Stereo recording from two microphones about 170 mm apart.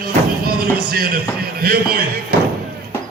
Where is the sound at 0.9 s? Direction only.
60° right (ahead or behind).